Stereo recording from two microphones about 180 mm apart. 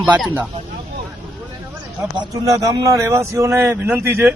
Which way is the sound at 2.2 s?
20° right (ahead or behind).